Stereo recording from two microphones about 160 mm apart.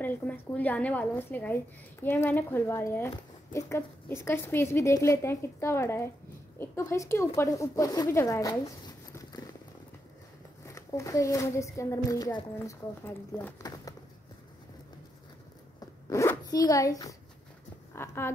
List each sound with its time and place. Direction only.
0.0 s a woman's voice: 10° left (ahead or behind)
10.6 s speech: 20° left (ahead or behind)
15.8 s zipper: 20° left (ahead or behind)
17.9 s a woman's voice: 15° left (ahead or behind)